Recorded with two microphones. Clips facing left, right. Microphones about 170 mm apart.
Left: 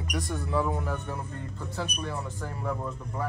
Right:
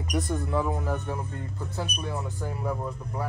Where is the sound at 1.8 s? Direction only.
5° right (ahead or behind).